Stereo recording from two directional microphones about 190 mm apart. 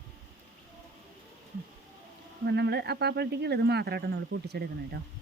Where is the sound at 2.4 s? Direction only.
60° right (ahead or behind).